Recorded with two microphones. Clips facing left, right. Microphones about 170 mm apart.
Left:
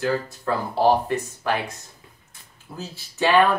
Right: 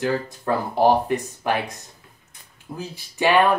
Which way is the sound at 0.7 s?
15° right (ahead or behind).